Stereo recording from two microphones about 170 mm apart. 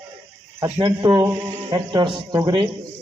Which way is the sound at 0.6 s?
20° right (ahead or behind).